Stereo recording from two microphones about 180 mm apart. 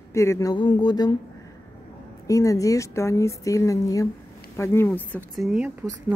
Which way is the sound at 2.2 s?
20° left (ahead or behind).